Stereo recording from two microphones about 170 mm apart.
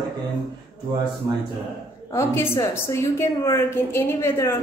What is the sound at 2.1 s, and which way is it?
A woman's voice, 15° left (ahead or behind).